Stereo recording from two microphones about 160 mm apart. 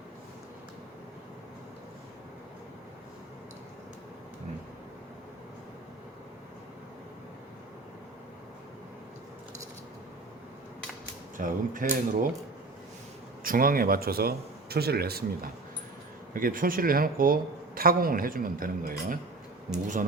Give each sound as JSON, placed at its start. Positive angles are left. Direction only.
{"t": 11.3, "sound": "speech", "side_deg": -55}
{"t": 13.4, "sound": "speech", "side_deg": -60}
{"t": 16.3, "sound": "speech", "side_deg": -60}